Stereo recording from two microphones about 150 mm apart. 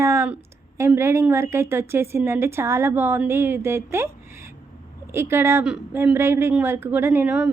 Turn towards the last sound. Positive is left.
turn(degrees=-10)  # may be behind; listen again after turning